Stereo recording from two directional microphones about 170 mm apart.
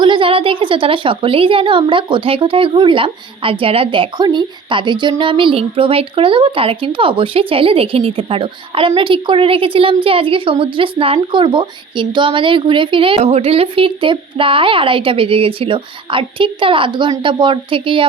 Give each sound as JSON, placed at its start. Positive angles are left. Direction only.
{"t": 0.0, "sound": "a woman's voice", "side_deg": -30}